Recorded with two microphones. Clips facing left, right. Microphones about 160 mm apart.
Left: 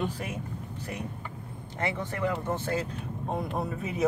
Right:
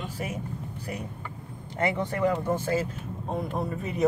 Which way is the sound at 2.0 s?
15° right (ahead or behind).